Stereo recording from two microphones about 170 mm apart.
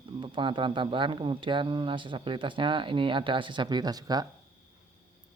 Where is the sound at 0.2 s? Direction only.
30° right (ahead or behind).